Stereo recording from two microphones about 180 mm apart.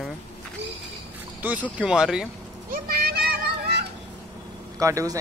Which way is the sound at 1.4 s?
5° right (ahead or behind).